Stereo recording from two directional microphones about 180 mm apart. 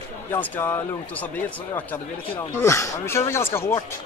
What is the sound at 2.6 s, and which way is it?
Speech, 15° left (ahead or behind).